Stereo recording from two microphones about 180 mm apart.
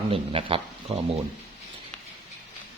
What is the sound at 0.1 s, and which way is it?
Speech, 30° right (ahead or behind).